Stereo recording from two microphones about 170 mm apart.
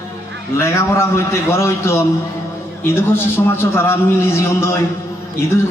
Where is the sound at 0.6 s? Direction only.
15° left (ahead or behind).